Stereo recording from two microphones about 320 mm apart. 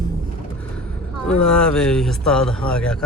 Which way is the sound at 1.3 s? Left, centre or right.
Centre.